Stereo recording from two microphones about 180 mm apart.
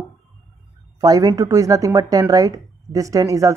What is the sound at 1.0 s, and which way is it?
Speech, 20° right (ahead or behind).